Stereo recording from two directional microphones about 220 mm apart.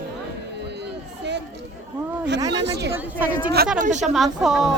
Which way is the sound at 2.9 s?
5° right (ahead or behind).